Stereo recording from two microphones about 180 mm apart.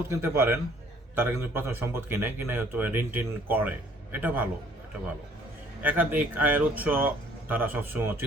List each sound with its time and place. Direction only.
0.1 s speech: 15° right (ahead or behind)
5.8 s speech: 10° right (ahead or behind)